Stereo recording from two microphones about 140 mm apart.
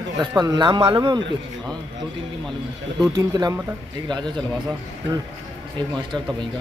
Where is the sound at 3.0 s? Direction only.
25° right (ahead or behind).